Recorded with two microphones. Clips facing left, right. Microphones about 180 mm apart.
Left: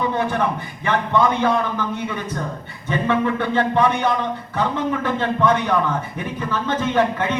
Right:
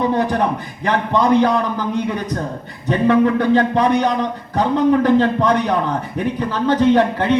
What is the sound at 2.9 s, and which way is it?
Speech, 35° right (ahead or behind).